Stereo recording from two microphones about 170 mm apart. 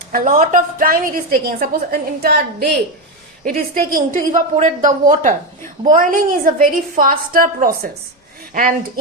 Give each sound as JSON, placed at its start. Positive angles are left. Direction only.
{"t": 0.1, "sound": "a woman's voice", "side_deg": -50}